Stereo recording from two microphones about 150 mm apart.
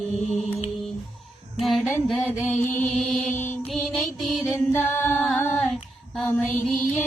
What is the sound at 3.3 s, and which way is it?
Mantra, 55° left (ahead or behind).